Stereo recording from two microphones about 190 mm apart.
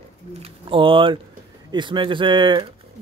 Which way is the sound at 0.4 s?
30° right (ahead or behind).